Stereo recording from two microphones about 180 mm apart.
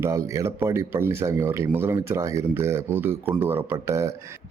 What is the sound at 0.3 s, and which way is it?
Speech, 15° right (ahead or behind).